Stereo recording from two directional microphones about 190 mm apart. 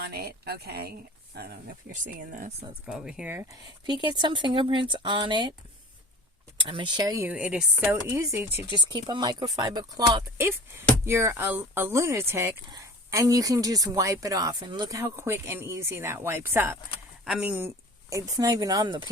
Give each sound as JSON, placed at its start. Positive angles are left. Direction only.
{"t": 0.0, "sound": "speech", "side_deg": -55}
{"t": 2.8, "sound": "speech", "side_deg": -5}
{"t": 3.8, "sound": "speech", "side_deg": -25}
{"t": 6.6, "sound": "speech", "side_deg": -25}
{"t": 8.0, "sound": "speech", "side_deg": -15}